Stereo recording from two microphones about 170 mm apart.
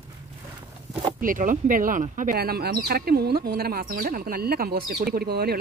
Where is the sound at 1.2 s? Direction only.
50° right (ahead or behind).